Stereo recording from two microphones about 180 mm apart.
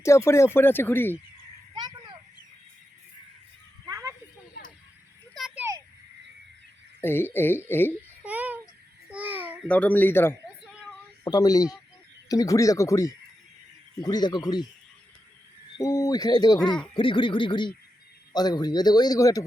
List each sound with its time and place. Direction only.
0.0 s speech: 15° left (ahead or behind)
1.7 s a sound: 25° right (ahead or behind)
3.8 s a sound: 20° right (ahead or behind)
5.3 s a sound: centre (ahead or behind)
7.0 s speech: 10° left (ahead or behind)
8.2 s baby cry: 10° right (ahead or behind)
9.1 s babbling: 10° right (ahead or behind)
9.6 s speech: 5° left (ahead or behind); by 14.7 s 25° left (ahead or behind)
15.8 s speech: 20° left (ahead or behind)